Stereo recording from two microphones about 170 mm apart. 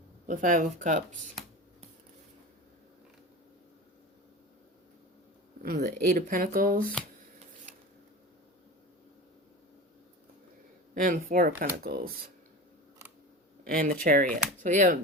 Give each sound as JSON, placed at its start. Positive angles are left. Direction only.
{"t": 0.3, "sound": "speech", "side_deg": -50}
{"t": 5.6, "sound": "speech", "side_deg": -60}
{"t": 10.9, "sound": "speech", "side_deg": -55}
{"t": 13.7, "sound": "speech", "side_deg": -55}